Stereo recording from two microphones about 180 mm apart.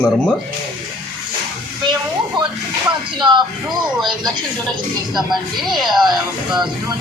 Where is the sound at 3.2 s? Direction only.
25° right (ahead or behind).